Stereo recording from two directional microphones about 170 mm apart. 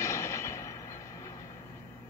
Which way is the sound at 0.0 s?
15° left (ahead or behind).